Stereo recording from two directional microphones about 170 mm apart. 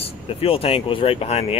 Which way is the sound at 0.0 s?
35° left (ahead or behind).